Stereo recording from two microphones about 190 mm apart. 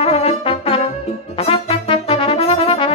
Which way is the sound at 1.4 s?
30° left (ahead or behind).